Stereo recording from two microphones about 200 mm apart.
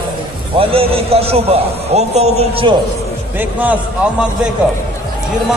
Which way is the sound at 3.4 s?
10° right (ahead or behind).